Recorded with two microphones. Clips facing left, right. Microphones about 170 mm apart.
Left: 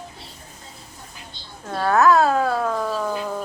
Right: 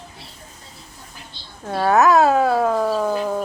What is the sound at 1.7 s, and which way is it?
Speech, 15° right (ahead or behind).